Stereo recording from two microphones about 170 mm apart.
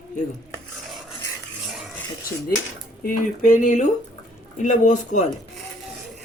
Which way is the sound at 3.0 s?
50° left (ahead or behind).